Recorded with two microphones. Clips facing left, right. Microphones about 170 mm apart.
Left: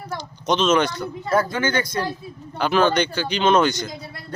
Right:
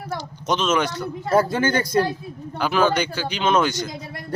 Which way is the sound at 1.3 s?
30° right (ahead or behind).